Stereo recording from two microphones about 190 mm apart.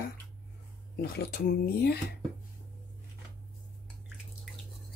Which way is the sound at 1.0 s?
55° left (ahead or behind).